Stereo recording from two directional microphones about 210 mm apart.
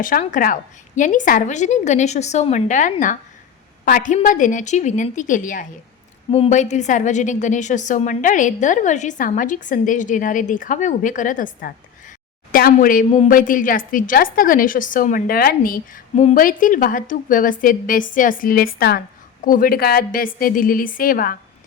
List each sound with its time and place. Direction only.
0.0 s a woman's voice: 40° left (ahead or behind)